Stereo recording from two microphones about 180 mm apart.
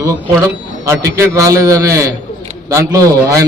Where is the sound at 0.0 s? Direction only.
15° right (ahead or behind).